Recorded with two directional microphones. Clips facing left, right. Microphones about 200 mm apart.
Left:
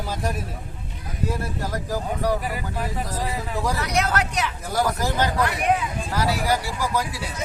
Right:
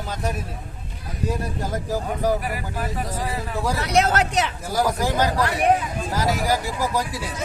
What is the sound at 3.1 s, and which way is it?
Speech, 5° right (ahead or behind).